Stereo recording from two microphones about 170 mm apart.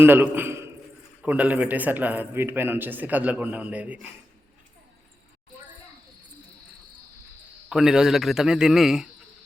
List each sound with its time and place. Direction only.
0.0 s a man's voice: 10° right (ahead or behind)
7.7 s a man's voice: 5° right (ahead or behind)